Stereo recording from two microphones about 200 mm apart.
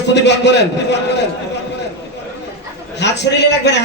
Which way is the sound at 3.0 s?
60° left (ahead or behind).